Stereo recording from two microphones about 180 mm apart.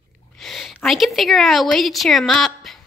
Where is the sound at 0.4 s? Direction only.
Centre (ahead or behind).